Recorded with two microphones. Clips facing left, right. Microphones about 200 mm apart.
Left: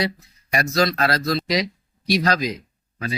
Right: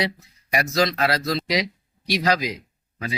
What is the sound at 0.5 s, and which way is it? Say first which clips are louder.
Speech: left 1 dB; 15° right (ahead or behind).